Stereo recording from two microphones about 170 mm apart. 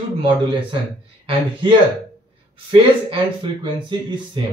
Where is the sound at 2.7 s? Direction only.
30° right (ahead or behind).